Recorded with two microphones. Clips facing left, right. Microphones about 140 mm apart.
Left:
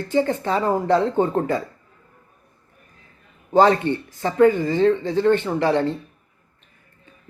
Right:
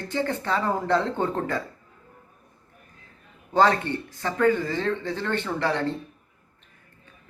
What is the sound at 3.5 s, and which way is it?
Speech, 15° left (ahead or behind).